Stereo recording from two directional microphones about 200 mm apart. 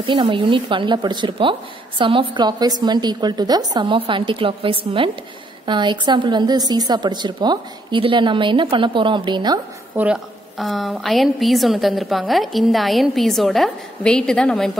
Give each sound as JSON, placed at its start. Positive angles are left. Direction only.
{"t": 0.0, "sound": "a woman's voice", "side_deg": -25}
{"t": 9.9, "sound": "a woman's voice", "side_deg": -5}